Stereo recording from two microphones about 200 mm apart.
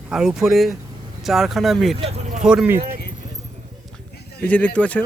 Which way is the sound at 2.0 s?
35° right (ahead or behind).